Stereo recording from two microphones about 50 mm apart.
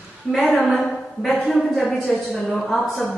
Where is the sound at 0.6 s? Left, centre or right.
Centre.